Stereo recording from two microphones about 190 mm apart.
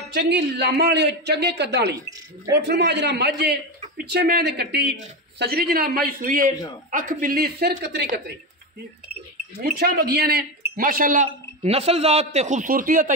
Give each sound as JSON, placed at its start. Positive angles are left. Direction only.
{"t": 0.1, "sound": "a man's voice", "side_deg": -60}
{"t": 9.6, "sound": "a man's voice", "side_deg": -50}